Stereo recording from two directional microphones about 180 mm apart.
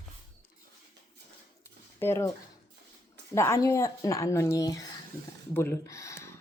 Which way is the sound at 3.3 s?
15° left (ahead or behind).